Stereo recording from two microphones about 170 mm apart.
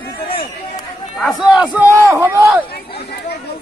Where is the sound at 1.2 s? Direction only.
Centre (ahead or behind).